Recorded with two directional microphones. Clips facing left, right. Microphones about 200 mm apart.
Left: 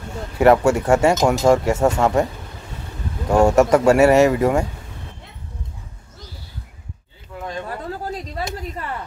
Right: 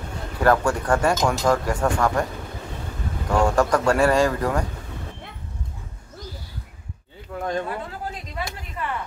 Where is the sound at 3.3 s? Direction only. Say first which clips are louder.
Left 6 dB; 25° left (ahead or behind).